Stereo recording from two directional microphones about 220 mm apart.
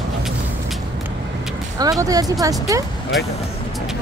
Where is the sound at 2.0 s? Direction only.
15° right (ahead or behind).